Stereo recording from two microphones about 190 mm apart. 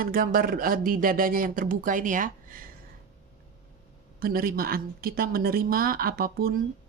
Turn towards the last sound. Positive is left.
turn(degrees=-50)  # may be behind; listen again after turning